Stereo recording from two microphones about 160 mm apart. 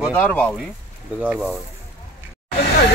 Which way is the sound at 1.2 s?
5° right (ahead or behind).